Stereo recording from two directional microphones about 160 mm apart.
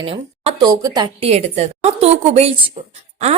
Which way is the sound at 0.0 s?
40° right (ahead or behind).